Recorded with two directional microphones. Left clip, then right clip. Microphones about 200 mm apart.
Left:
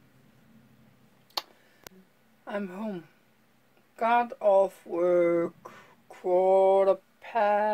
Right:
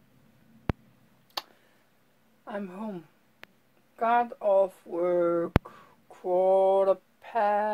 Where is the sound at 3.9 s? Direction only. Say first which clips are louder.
Even; 10° left (ahead or behind).